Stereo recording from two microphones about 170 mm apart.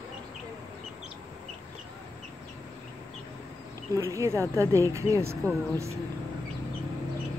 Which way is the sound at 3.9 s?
15° right (ahead or behind).